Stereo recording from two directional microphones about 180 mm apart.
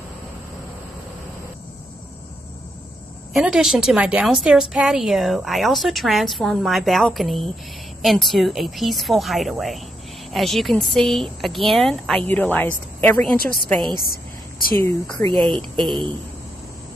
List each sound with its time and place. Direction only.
3.3 s a woman's voice: 5° right (ahead or behind)
13.4 s a woman's voice: 55° right (ahead or behind)
13.9 s a sound: 55° left (ahead or behind)
14.8 s speech: 15° left (ahead or behind)